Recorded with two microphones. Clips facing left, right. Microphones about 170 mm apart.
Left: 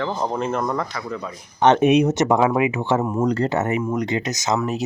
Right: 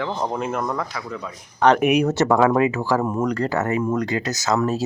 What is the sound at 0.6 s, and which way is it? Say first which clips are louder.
Speech: left 2 dB; 10° left (ahead or behind).